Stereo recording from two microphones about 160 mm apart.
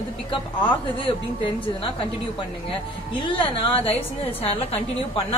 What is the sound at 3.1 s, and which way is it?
A woman's voice, 35° left (ahead or behind).